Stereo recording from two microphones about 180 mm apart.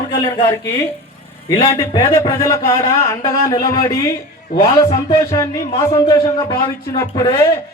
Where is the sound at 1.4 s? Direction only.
30° left (ahead or behind).